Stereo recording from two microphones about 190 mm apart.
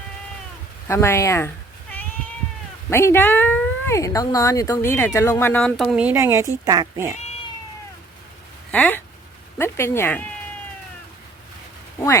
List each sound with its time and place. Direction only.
0.9 s speech: 15° left (ahead or behind)
2.9 s speech: 15° left (ahead or behind); by 7.1 s 15° right (ahead or behind)
8.7 s speech: 10° left (ahead or behind)
11.9 s speech: 15° left (ahead or behind)